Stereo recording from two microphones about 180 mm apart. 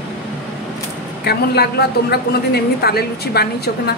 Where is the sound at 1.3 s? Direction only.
60° left (ahead or behind).